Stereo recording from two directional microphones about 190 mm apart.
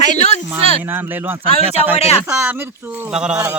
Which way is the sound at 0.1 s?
40° left (ahead or behind).